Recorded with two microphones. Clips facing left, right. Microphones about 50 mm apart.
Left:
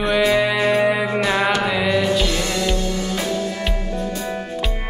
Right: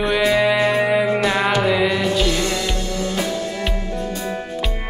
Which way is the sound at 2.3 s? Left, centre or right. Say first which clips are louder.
Right 2 dB; left.